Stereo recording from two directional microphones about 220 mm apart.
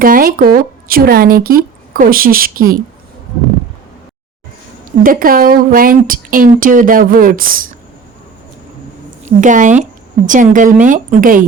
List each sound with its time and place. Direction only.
0.0 s speech: 40° right (ahead or behind)
5.0 s speech: 40° right (ahead or behind)
9.2 s speech: 35° right (ahead or behind)